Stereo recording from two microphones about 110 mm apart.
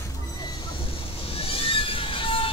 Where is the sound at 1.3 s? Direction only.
60° left (ahead or behind).